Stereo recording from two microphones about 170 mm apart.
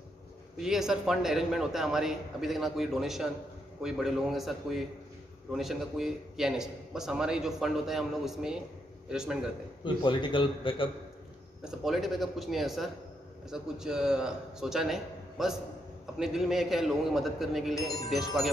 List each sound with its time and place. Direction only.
0.6 s a man's voice: centre (ahead or behind)
9.8 s a man's voice: 30° left (ahead or behind)
11.6 s a man's voice: centre (ahead or behind)